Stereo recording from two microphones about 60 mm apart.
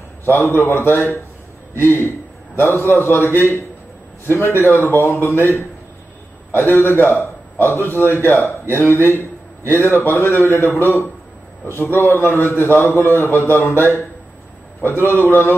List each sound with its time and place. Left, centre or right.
0.2 s a man's voice: left